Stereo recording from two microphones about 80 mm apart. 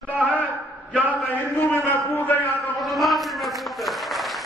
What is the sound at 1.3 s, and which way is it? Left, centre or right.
A man's voice, left.